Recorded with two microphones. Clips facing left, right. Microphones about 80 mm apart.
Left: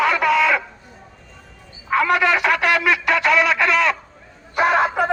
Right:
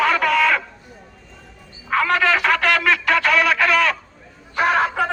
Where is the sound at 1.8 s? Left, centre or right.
Centre.